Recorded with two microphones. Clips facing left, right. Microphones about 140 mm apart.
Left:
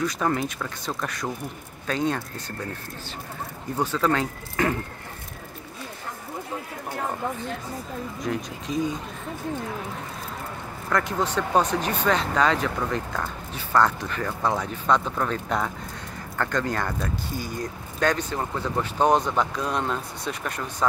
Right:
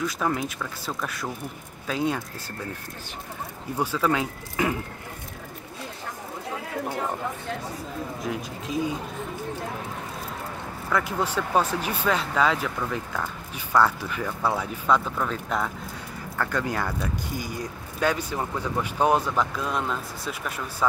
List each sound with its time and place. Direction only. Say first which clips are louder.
0.0 s speech: left 2 dB; centre (ahead or behind)
3.7 s speech: left 1 dB; 10° right (ahead or behind)
8.2 s speech: left 2 dB; 5° right (ahead or behind)
10.9 s speech: left 1 dB; 5° right (ahead or behind)